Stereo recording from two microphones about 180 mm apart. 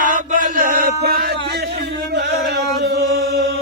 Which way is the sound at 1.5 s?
65° right (ahead or behind).